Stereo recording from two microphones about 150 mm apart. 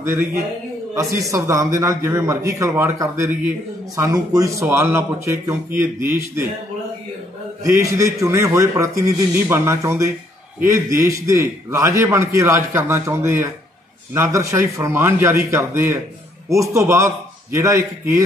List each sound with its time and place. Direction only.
0.0 s a man's voice: 15° right (ahead or behind)
7.6 s a man's voice: 20° right (ahead or behind)